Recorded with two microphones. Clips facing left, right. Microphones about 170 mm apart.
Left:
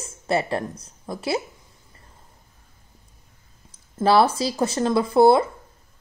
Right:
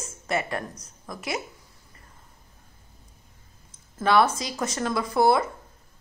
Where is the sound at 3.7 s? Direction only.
30° left (ahead or behind).